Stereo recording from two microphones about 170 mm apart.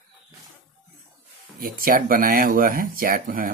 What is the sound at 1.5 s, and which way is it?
Speech, 60° right (ahead or behind).